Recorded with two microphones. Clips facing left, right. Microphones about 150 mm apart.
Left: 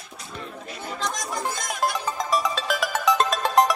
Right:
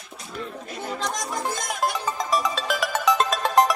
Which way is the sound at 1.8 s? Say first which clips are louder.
Left 1 dB; centre (ahead or behind).